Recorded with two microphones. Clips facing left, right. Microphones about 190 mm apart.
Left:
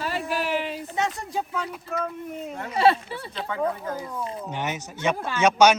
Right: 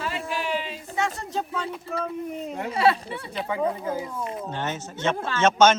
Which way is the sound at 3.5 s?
10° right (ahead or behind).